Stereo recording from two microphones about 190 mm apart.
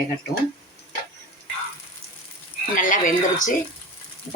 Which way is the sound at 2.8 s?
45° left (ahead or behind).